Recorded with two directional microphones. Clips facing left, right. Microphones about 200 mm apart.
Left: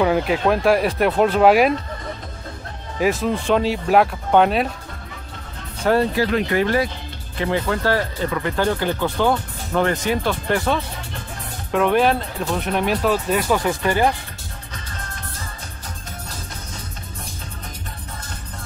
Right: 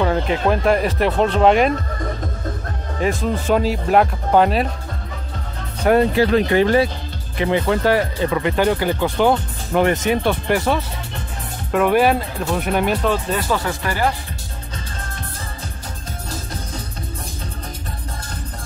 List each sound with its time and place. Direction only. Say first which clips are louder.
0.0 s speech: left 1 dB; 10° left (ahead or behind)
3.0 s speech: left 1 dB; 5° left (ahead or behind)
5.9 s speech: right 3 dB; 20° right (ahead or behind); by 14.1 s 20° left (ahead or behind)